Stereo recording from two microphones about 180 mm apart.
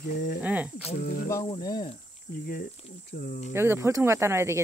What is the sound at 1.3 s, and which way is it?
Sizzle, 25° left (ahead or behind).